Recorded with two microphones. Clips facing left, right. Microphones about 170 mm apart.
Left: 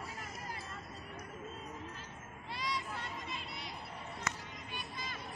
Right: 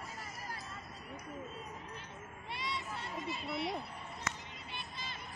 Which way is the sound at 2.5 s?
25° right (ahead or behind).